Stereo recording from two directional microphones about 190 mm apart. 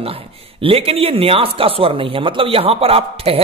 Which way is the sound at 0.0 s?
30° right (ahead or behind).